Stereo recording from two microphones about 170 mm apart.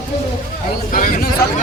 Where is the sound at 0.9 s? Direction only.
55° left (ahead or behind).